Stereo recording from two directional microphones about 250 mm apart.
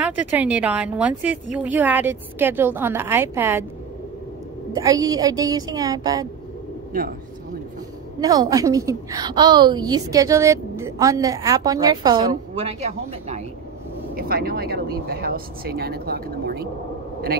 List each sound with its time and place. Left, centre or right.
0.0 s a woman's voice: centre
4.7 s a woman's voice: centre
8.2 s a woman's voice: centre
14.1 s speech: right